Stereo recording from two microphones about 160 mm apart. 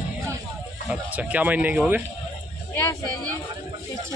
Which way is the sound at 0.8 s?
10° right (ahead or behind).